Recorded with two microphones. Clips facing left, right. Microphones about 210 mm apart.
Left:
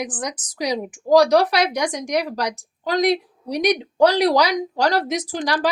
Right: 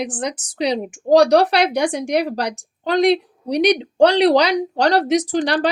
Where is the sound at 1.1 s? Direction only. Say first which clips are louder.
Right 2 dB; 65° right (ahead or behind).